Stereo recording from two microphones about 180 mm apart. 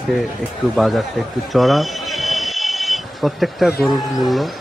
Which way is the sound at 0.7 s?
Centre (ahead or behind).